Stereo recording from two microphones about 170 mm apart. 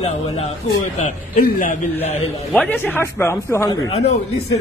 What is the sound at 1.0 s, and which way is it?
Speech, 50° left (ahead or behind).